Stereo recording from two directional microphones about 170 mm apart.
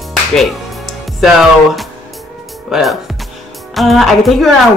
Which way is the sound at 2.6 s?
Centre (ahead or behind).